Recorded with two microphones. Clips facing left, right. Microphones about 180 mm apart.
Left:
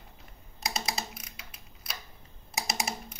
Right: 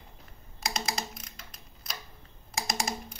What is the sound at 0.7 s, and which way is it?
Typing, 5° left (ahead or behind).